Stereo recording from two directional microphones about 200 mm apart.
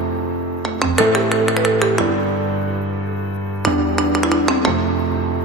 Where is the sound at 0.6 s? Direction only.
Centre (ahead or behind).